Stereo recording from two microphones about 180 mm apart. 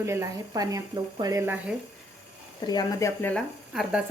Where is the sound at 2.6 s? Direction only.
20° left (ahead or behind).